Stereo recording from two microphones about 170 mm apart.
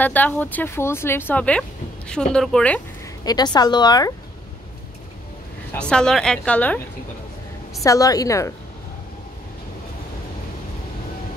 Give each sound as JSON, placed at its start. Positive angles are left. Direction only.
{"t": 0.0, "sound": "a woman's voice", "side_deg": 10}
{"t": 3.3, "sound": "a woman's voice", "side_deg": 25}
{"t": 5.7, "sound": "a woman's voice", "side_deg": 5}
{"t": 7.8, "sound": "a woman's voice", "side_deg": 20}